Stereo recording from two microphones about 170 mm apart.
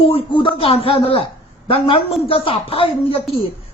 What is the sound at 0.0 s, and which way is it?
A man's voice, 35° left (ahead or behind).